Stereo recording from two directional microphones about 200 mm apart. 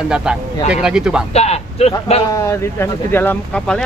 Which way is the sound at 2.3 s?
15° left (ahead or behind).